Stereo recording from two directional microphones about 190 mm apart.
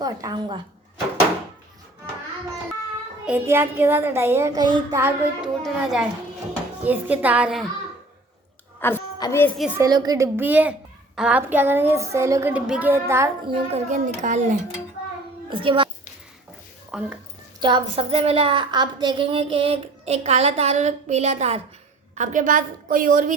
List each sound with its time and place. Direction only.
0.0 s a woman's voice: 20° right (ahead or behind)
3.2 s a child's voice: 10° right (ahead or behind)
5.6 s a child's voice: centre (ahead or behind)
8.8 s a woman's voice: 15° left (ahead or behind)
9.6 s a child's voice: 5° right (ahead or behind)
9.8 s a child's voice: 20° right (ahead or behind)
13.5 s a woman's voice: 35° right (ahead or behind)
15.4 s a child's voice: 25° right (ahead or behind)
16.9 s speech: 5° right (ahead or behind)
17.6 s a woman's voice: 25° right (ahead or behind); by 23.3 s 45° right (ahead or behind)